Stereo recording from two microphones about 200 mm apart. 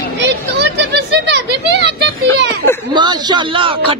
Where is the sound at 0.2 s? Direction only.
60° right (ahead or behind).